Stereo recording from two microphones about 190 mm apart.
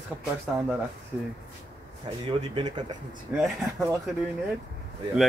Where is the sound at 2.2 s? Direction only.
25° right (ahead or behind).